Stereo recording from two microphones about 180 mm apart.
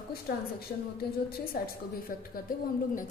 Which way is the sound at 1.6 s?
60° left (ahead or behind).